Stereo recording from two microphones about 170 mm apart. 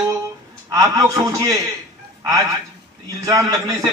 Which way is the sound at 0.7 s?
20° right (ahead or behind).